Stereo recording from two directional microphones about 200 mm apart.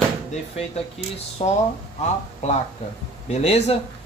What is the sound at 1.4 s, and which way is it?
Speech, 30° left (ahead or behind).